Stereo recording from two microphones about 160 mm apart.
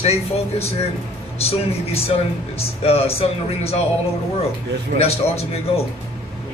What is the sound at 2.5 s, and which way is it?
A man's voice, 40° left (ahead or behind).